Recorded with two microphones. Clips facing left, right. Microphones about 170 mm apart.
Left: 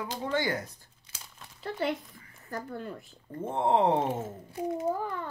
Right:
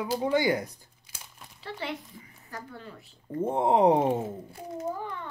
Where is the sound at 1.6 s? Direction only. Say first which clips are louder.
Left 5 dB; 50° left (ahead or behind).